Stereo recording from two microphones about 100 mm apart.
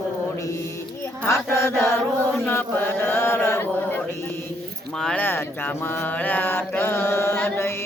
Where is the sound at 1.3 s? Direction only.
30° left (ahead or behind).